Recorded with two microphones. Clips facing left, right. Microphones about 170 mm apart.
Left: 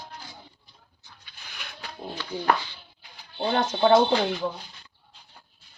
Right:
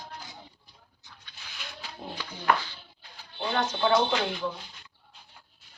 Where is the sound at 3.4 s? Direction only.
35° left (ahead or behind).